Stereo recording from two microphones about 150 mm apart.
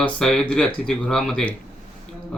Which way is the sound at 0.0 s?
5° left (ahead or behind).